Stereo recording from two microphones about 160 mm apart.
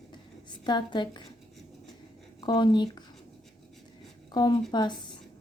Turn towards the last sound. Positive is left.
turn(degrees=30)  # may be behind; listen again after turning